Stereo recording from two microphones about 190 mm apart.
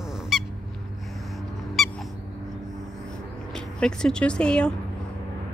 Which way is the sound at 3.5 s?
5° left (ahead or behind).